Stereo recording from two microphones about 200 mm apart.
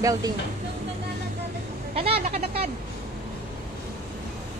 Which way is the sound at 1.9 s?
30° right (ahead or behind).